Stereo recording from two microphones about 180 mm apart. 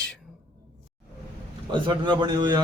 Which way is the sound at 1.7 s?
25° right (ahead or behind).